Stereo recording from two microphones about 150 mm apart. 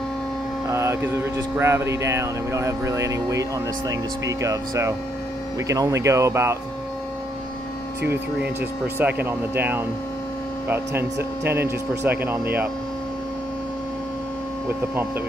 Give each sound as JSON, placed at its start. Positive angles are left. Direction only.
{"t": 0.7, "sound": "speech", "side_deg": -20}
{"t": 8.0, "sound": "speech", "side_deg": -15}